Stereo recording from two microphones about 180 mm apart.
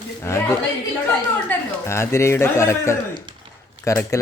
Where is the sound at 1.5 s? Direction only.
15° left (ahead or behind).